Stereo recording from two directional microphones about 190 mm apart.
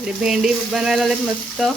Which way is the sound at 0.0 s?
Centre (ahead or behind).